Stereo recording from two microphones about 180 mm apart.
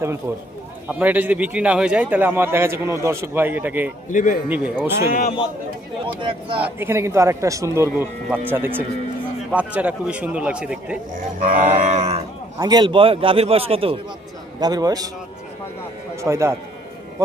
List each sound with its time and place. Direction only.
0.9 s a man's voice: 10° right (ahead or behind)
4.1 s speech: 45° left (ahead or behind)
4.4 s a man's voice: 10° right (ahead or behind)
6.1 s a man's voice: 30° right (ahead or behind)
6.6 s a man's voice: 10° right (ahead or behind)
11.3 s livestock: 50° right (ahead or behind)
12.5 s a man's voice: 20° right (ahead or behind)
14.6 s a man's voice: 20° right (ahead or behind)
16.2 s a man's voice: 15° right (ahead or behind)